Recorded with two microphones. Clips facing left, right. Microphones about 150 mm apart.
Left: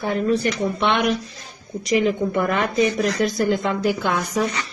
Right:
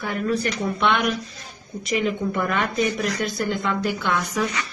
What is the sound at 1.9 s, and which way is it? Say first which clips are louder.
Speech: left 4 dB; 30° left (ahead or behind).